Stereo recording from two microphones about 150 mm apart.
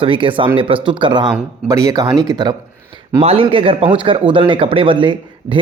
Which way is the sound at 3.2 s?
40° right (ahead or behind).